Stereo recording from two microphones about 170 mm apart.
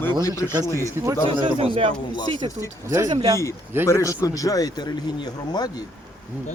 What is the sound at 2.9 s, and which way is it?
Speech, 20° right (ahead or behind).